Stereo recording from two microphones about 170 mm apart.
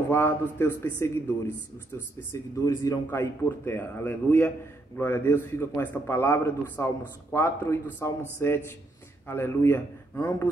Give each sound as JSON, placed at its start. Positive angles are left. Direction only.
{"t": 0.1, "sound": "a man's voice", "side_deg": 15}
{"t": 2.1, "sound": "a man's voice", "side_deg": 15}